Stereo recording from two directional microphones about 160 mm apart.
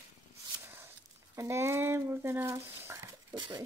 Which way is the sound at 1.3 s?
15° right (ahead or behind).